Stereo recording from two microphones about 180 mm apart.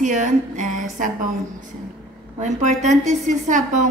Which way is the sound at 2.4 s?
40° right (ahead or behind).